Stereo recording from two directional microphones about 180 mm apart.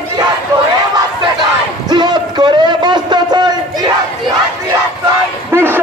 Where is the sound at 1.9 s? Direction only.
25° right (ahead or behind).